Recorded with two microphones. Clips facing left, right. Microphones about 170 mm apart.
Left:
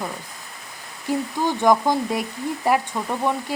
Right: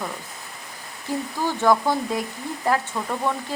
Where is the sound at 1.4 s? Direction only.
15° left (ahead or behind).